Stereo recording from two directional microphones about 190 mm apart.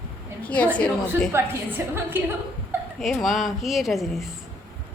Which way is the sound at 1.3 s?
10° right (ahead or behind).